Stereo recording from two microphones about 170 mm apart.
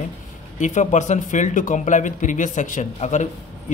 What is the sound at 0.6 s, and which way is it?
A man's voice, 45° left (ahead or behind).